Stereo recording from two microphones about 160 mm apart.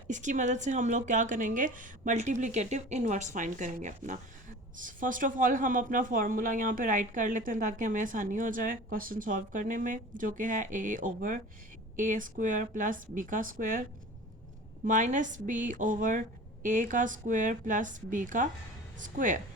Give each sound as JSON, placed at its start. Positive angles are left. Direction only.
{"t": 0.1, "sound": "a woman's voice", "side_deg": -50}
{"t": 14.8, "sound": "a woman's voice", "side_deg": -55}